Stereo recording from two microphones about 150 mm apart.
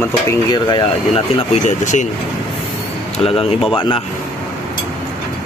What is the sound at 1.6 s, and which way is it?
Speech, 55° left (ahead or behind).